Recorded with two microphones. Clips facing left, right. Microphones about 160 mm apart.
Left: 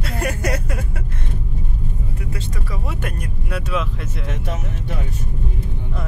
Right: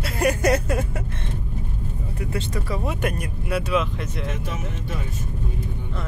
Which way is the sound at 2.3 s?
20° right (ahead or behind).